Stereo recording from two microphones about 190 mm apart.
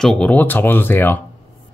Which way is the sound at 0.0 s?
5° left (ahead or behind).